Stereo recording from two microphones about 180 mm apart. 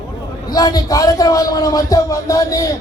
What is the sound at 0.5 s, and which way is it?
A man's voice, 20° left (ahead or behind).